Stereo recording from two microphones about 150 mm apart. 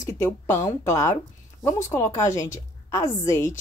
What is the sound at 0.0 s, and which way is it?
A woman's voice, 15° left (ahead or behind).